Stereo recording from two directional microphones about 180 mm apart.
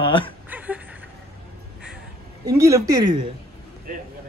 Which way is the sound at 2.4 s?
15° right (ahead or behind).